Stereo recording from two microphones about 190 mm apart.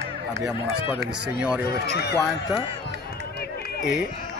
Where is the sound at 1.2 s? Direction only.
5° right (ahead or behind).